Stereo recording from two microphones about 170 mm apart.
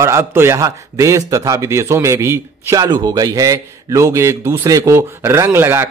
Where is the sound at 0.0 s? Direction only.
15° right (ahead or behind).